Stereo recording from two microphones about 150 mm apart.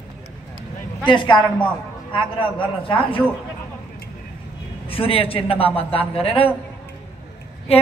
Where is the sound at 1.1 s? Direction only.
30° left (ahead or behind).